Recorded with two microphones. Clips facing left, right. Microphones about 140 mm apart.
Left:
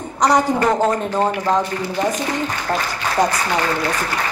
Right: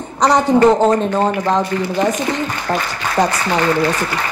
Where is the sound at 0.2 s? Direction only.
25° right (ahead or behind).